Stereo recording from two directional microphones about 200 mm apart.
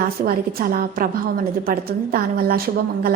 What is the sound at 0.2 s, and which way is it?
A woman's voice, 45° right (ahead or behind).